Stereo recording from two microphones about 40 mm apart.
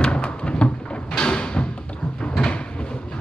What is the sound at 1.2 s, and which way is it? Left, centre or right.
Music, left.